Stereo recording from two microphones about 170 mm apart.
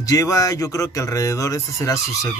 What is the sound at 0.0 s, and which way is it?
Speech, 20° left (ahead or behind).